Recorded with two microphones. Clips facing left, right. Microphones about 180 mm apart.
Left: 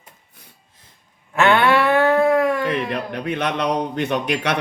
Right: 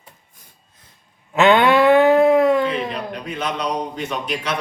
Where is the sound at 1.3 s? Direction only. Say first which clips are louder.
Right 2 dB; 20° right (ahead or behind).